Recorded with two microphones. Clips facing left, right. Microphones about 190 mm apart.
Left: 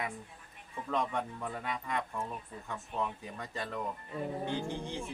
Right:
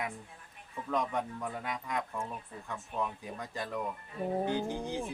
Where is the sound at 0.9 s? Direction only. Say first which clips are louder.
Right 1 dB; centre (ahead or behind).